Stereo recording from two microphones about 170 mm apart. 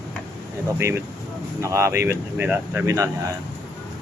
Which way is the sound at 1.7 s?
15° right (ahead or behind).